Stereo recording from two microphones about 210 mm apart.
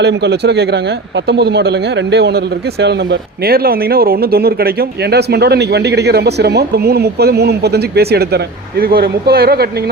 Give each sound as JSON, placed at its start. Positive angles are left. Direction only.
{"t": 0.0, "sound": "a man's voice", "side_deg": -55}